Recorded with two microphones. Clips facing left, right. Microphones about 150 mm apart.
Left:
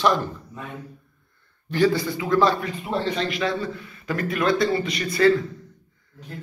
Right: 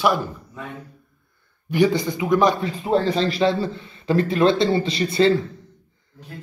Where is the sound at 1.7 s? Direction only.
15° right (ahead or behind).